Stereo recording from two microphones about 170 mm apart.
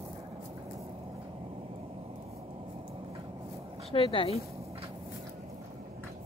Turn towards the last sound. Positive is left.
turn(degrees=35)  # may be behind; listen again after turning